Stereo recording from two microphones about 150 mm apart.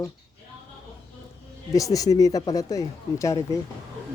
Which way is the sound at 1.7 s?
20° left (ahead or behind).